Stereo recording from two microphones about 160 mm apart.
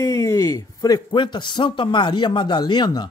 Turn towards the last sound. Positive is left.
turn(degrees=25)  # may be behind; listen again after turning